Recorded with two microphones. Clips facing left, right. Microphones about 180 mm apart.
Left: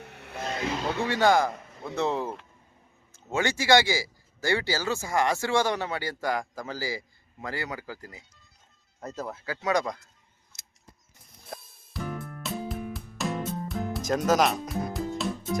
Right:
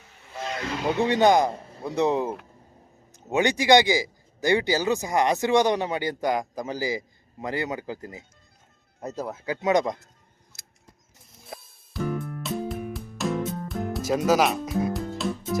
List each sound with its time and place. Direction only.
0.0 s vehicle: 65° left (ahead or behind)
0.8 s speech: 15° right (ahead or behind)
1.5 s a sound: 30° right (ahead or behind)
2.0 s speech: 15° right (ahead or behind)
10.5 s a sound: centre (ahead or behind)
11.3 s music: centre (ahead or behind)